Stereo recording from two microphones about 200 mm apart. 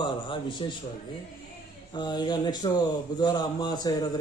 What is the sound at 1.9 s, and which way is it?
Speech, 20° left (ahead or behind).